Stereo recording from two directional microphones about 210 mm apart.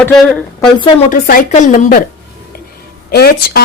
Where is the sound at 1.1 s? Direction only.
40° left (ahead or behind).